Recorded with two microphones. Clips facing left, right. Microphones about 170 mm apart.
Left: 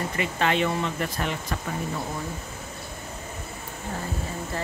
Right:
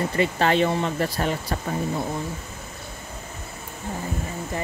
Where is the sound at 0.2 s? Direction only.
35° right (ahead or behind).